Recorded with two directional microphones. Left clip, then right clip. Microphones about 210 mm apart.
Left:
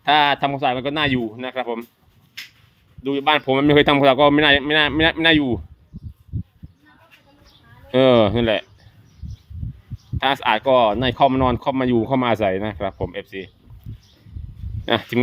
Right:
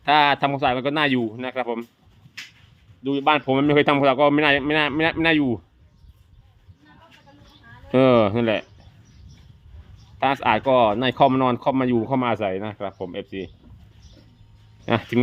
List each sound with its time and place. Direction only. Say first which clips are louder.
0.0 s a man's voice: left 1 dB; 5° left (ahead or behind)
3.0 s speech: left 1 dB; 30° left (ahead or behind)
7.9 s speech: left 2 dB; 15° left (ahead or behind)
10.2 s speech: left 1 dB; 20° left (ahead or behind)
14.8 s speech: left 2 dB; 20° left (ahead or behind)